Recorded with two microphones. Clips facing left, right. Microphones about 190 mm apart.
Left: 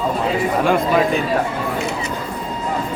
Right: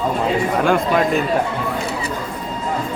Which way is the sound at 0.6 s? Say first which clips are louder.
Left 1 dB; centre (ahead or behind).